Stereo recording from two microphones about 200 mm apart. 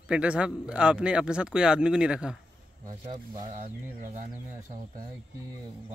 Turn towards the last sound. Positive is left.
turn(degrees=-40)  # may be behind; listen again after turning